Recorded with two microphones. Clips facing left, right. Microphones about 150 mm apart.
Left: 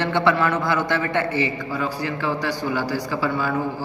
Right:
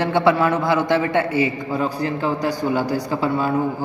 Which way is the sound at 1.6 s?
25° right (ahead or behind).